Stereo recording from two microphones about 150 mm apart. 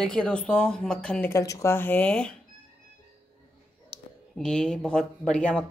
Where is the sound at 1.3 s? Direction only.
20° left (ahead or behind).